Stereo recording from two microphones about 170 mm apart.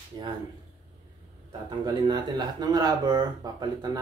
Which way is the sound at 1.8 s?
25° right (ahead or behind).